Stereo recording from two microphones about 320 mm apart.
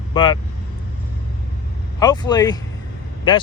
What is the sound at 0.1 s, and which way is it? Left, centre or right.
Speech, centre.